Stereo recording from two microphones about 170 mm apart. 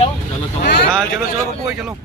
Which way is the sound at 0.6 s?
70° left (ahead or behind).